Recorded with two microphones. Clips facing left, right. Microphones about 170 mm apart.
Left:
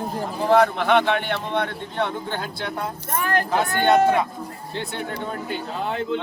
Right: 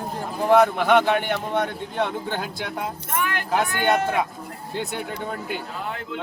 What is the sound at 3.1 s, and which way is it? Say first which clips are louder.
Speech: left 4 dB; 40° left (ahead or behind).